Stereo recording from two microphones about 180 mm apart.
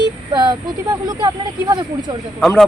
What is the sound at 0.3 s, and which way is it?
Speech, 20° right (ahead or behind).